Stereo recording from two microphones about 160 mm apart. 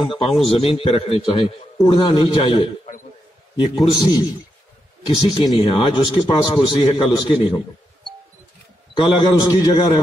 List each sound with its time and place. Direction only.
0.5 s a man's voice: 35° left (ahead or behind)
1.8 s a man's voice: 25° left (ahead or behind)
8.9 s a man's voice: 25° left (ahead or behind)